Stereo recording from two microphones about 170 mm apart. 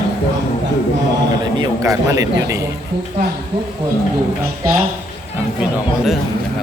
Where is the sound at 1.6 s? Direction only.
20° right (ahead or behind).